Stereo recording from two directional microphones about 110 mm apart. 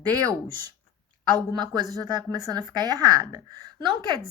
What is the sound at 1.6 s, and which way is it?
A woman's voice, 40° right (ahead or behind).